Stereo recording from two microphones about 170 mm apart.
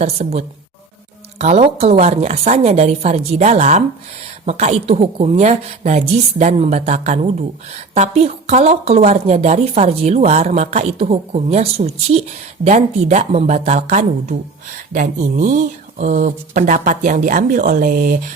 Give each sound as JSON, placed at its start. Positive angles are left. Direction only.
{"t": 0.0, "sound": "a woman's voice", "side_deg": -40}